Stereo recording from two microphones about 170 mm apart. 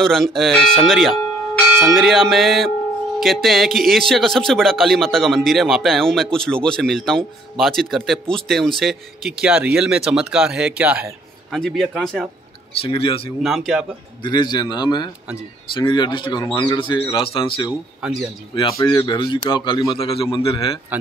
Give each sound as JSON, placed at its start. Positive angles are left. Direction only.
{"t": 0.0, "sound": "speech", "side_deg": 0}
{"t": 12.8, "sound": "speech", "side_deg": 35}
{"t": 13.4, "sound": "speech", "side_deg": 0}
{"t": 14.2, "sound": "speech", "side_deg": 25}
{"t": 20.9, "sound": "speech", "side_deg": -10}